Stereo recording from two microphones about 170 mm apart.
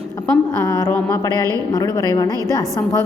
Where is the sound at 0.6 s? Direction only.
20° left (ahead or behind).